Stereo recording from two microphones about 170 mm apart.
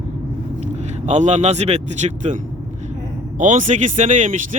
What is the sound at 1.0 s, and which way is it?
Speech, 45° right (ahead or behind).